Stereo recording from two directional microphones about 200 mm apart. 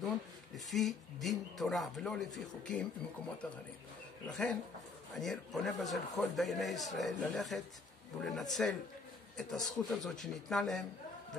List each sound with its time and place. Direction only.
0.7 s speech: centre (ahead or behind)